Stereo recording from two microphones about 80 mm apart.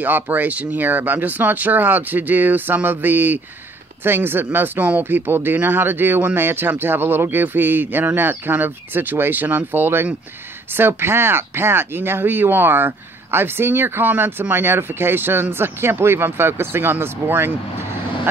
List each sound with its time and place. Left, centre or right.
0.0 s speech: right